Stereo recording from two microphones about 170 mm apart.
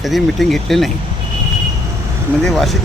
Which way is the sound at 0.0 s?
Centre (ahead or behind).